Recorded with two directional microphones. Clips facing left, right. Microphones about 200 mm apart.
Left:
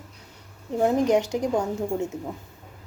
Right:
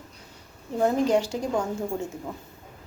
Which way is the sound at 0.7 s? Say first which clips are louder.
Left 1 dB; 15° left (ahead or behind).